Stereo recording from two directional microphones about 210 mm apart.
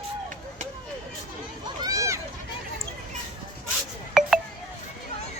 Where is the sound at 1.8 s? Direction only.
15° right (ahead or behind).